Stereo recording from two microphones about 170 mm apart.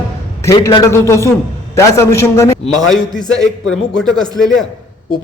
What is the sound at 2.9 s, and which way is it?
A man's voice, centre (ahead or behind).